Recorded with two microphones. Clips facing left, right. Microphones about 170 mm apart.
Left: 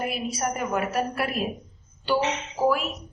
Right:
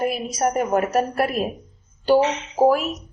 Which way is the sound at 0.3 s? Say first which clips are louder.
Right 6 dB; 40° right (ahead or behind).